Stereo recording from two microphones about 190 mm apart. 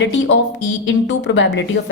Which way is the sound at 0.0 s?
75° left (ahead or behind).